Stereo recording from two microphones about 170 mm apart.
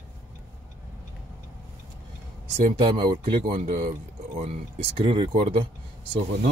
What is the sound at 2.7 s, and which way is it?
Speech, 30° right (ahead or behind).